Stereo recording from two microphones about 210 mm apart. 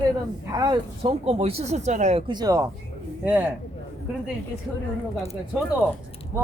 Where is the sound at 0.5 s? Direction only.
20° right (ahead or behind).